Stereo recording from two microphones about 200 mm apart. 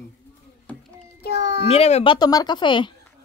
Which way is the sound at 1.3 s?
60° left (ahead or behind).